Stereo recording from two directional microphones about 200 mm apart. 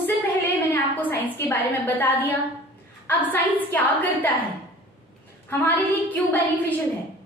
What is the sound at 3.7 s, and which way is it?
Speech, 10° left (ahead or behind).